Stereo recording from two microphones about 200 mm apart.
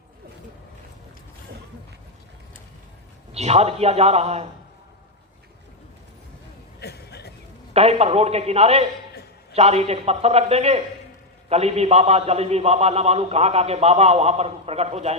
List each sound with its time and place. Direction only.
3.3 s a man's voice: 30° right (ahead or behind)
6.7 s a sound: 55° left (ahead or behind)
7.7 s a man's voice: 30° right (ahead or behind)